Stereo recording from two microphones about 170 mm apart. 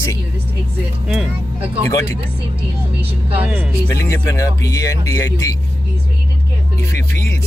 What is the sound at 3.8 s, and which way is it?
Speech, 15° left (ahead or behind).